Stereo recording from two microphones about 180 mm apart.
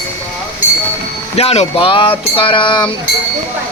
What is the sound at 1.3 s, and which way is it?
Music, 35° left (ahead or behind).